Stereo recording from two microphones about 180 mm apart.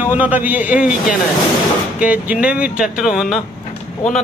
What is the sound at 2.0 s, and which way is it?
Speech, 5° right (ahead or behind).